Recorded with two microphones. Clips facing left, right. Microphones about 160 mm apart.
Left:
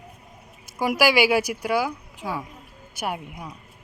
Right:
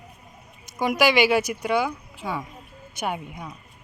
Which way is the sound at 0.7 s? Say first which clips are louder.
Even; 5° left (ahead or behind).